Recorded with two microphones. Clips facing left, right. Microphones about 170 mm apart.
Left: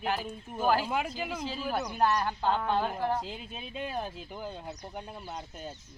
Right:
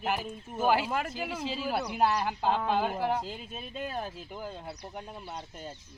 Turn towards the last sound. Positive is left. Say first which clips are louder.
# left 1 dB
turn(degrees=5)  # may be behind; listen again after turning